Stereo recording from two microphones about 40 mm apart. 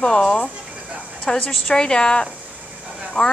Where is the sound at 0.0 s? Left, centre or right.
Left.